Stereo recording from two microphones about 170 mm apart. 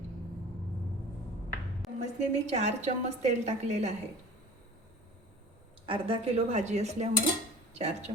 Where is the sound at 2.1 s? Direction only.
40° right (ahead or behind).